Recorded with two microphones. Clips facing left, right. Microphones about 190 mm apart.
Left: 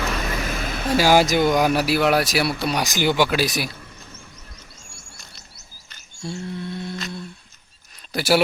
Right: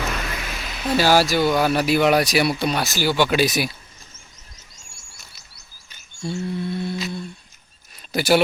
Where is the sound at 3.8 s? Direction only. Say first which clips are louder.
Left 7 dB; 60° left (ahead or behind).